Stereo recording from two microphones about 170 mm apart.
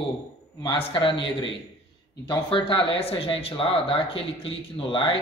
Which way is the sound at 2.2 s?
30° left (ahead or behind).